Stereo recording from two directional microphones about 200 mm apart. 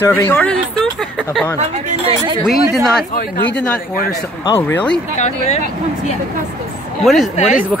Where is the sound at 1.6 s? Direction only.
35° right (ahead or behind).